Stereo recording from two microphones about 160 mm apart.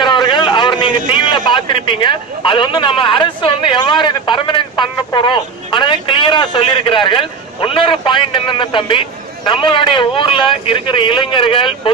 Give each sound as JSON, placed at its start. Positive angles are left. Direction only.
{"t": 0.0, "sound": "a man's voice", "side_deg": 30}